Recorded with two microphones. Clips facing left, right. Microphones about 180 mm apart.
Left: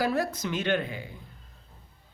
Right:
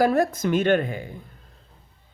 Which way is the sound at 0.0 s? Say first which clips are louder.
Right 7 dB; 50° right (ahead or behind).